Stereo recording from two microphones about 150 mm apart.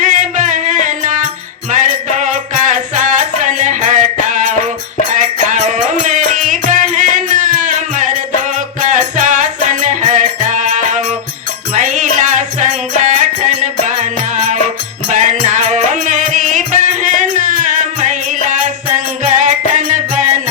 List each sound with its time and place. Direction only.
0.0 s music: 55° right (ahead or behind)